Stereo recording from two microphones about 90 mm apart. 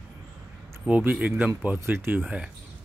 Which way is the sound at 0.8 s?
15° right (ahead or behind).